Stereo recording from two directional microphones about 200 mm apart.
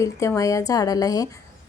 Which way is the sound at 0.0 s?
15° left (ahead or behind).